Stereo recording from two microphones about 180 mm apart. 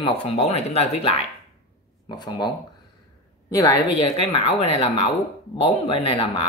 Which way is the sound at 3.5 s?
20° left (ahead or behind).